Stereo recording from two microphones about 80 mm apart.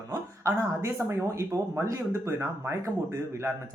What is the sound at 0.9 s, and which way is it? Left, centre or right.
Speech, right.